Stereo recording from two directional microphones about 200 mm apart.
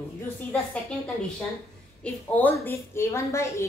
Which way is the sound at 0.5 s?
5° left (ahead or behind).